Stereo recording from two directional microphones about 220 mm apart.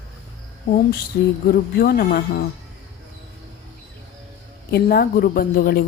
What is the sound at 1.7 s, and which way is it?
Speech, 45° left (ahead or behind).